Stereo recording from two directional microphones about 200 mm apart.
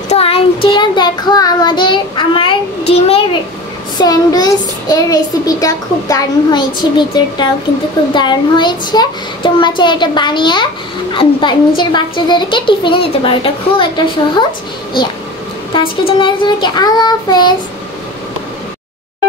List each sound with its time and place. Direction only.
0.1 s child singing: 30° left (ahead or behind)
4.0 s a child's voice: 20° left (ahead or behind)
15.7 s a child's voice: 25° left (ahead or behind)